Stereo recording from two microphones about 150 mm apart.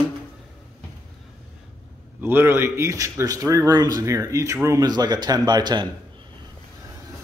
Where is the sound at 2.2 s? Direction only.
15° right (ahead or behind).